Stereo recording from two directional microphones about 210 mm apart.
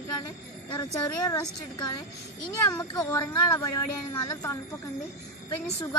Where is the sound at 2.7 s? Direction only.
15° left (ahead or behind).